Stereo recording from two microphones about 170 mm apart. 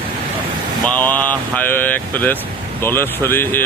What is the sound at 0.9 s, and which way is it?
Speech, 10° left (ahead or behind).